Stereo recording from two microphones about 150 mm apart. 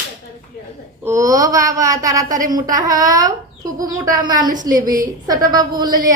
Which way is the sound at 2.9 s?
65° right (ahead or behind).